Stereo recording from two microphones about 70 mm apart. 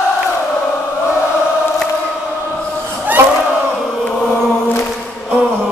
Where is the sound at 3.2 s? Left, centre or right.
Right.